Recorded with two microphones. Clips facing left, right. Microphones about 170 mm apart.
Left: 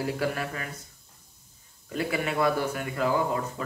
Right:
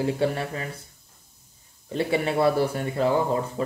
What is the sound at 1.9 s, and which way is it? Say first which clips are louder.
Speech: right 5 dB; 30° right (ahead or behind).